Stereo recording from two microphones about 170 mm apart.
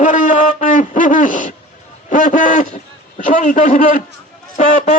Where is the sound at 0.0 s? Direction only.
45° left (ahead or behind).